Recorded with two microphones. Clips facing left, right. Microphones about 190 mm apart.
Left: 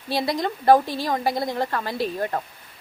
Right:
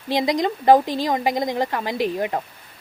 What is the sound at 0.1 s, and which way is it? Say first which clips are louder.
A woman's voice: right 4 dB; 20° right (ahead or behind).